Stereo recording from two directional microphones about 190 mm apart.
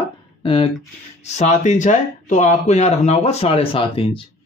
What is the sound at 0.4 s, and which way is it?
Speech, 30° left (ahead or behind).